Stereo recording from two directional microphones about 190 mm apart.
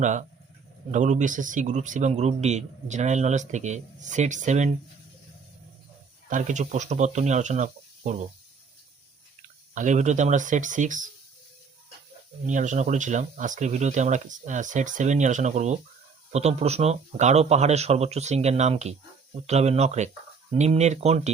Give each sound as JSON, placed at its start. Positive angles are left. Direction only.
{"t": 0.0, "sound": "a man's voice", "side_deg": -40}
{"t": 6.3, "sound": "a man's voice", "side_deg": -40}
{"t": 9.7, "sound": "a man's voice", "side_deg": -40}
{"t": 12.5, "sound": "a man's voice", "side_deg": -40}